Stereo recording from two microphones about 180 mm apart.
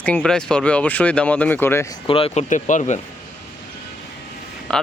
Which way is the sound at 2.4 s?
45° left (ahead or behind).